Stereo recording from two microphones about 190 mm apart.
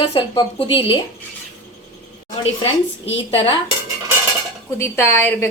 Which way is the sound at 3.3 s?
30° left (ahead or behind).